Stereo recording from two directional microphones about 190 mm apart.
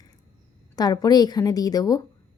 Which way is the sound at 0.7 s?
20° left (ahead or behind).